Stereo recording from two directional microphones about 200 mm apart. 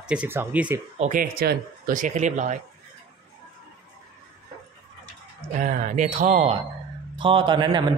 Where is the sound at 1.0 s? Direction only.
40° right (ahead or behind).